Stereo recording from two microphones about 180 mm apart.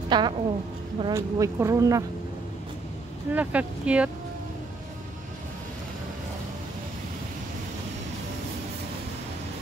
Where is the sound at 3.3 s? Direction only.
10° right (ahead or behind).